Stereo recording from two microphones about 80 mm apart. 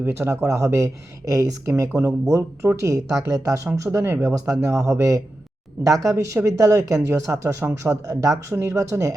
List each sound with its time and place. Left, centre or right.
0.0 s speech: right